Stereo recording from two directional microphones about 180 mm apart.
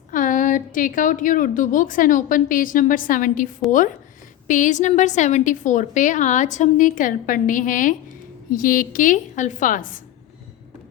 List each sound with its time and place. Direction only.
0.1 s a woman's voice: 45° left (ahead or behind)